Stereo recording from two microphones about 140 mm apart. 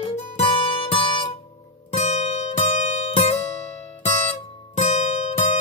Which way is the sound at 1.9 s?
50° left (ahead or behind).